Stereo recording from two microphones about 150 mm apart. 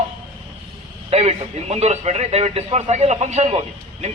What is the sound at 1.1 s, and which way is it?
A man's voice, 45° right (ahead or behind).